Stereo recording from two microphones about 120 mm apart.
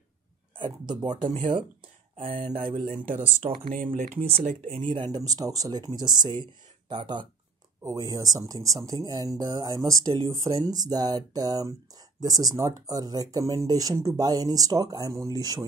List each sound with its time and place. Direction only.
0.6 s speech: 40° right (ahead or behind)
3.4 s speech: 75° right (ahead or behind)
4.7 s speech: 45° right (ahead or behind)